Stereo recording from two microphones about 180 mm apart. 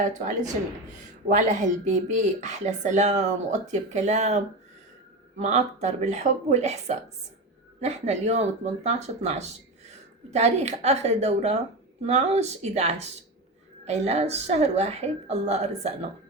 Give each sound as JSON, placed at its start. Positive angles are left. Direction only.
{"t": 0.0, "sound": "a woman's voice", "side_deg": -40}